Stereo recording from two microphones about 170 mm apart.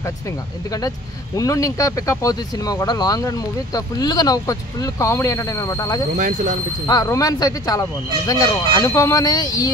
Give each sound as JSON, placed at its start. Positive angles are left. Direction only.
{"t": 0.7, "sound": "speech", "side_deg": 20}
{"t": 6.1, "sound": "speech", "side_deg": -50}
{"t": 6.9, "sound": "speech", "side_deg": 20}